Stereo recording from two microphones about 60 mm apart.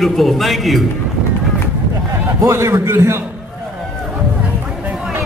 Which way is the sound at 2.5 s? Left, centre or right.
Right.